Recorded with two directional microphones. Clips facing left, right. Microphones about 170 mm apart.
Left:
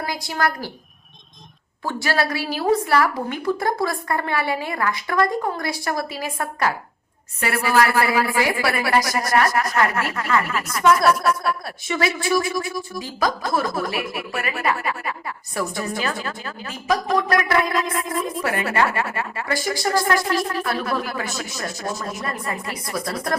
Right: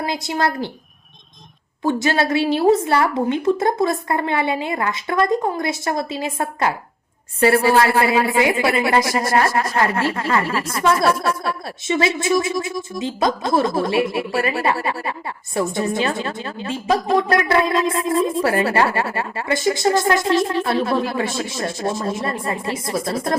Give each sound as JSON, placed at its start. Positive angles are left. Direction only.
{"t": 0.0, "sound": "a woman's voice", "side_deg": -20}
{"t": 1.8, "sound": "a woman's voice", "side_deg": -20}